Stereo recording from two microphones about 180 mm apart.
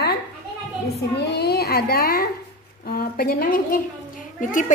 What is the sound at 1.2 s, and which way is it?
A woman's voice, 65° left (ahead or behind).